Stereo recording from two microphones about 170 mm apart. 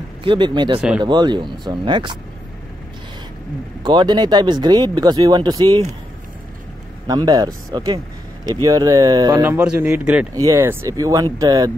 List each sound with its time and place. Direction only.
0.2 s speech: 30° right (ahead or behind)
0.7 s speech: 10° right (ahead or behind)
1.0 s speech: 25° right (ahead or behind)
3.8 s speech: 25° right (ahead or behind)
7.1 s speech: 20° right (ahead or behind)
10.3 s speech: 20° right (ahead or behind)